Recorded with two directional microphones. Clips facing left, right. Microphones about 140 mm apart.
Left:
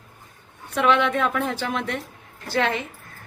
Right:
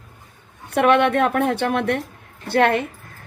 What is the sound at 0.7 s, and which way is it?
A woman's voice, 60° right (ahead or behind).